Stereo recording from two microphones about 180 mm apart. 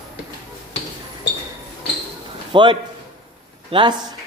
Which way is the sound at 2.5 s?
25° right (ahead or behind).